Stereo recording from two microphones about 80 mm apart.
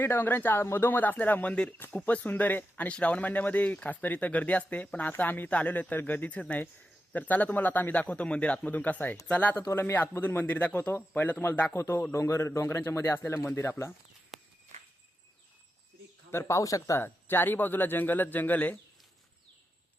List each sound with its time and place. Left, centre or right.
0.0 s speech: left
11.7 s speech: left
14.3 s walk: centre
16.3 s speech: left
17.0 s speech: left